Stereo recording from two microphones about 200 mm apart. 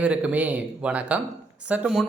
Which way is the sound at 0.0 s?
5° right (ahead or behind).